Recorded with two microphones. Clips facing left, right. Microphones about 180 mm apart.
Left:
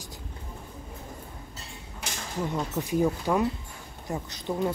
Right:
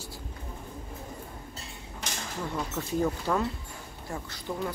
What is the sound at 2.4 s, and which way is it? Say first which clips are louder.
Speech: left 4 dB; 15° left (ahead or behind).